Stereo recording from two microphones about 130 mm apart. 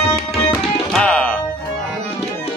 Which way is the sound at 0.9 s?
5° left (ahead or behind).